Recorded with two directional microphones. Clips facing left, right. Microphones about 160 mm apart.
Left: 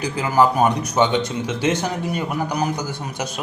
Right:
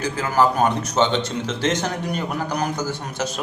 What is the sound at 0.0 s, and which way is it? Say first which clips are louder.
A man's voice: left 2 dB; 15° left (ahead or behind).